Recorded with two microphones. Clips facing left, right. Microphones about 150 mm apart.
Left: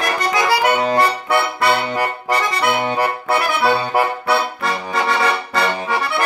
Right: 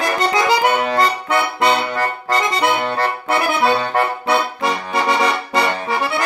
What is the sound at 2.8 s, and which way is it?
Accordion, 10° left (ahead or behind).